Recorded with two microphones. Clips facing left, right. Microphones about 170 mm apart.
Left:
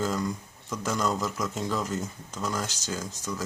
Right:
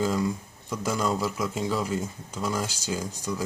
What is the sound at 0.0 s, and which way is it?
Speech, 10° right (ahead or behind).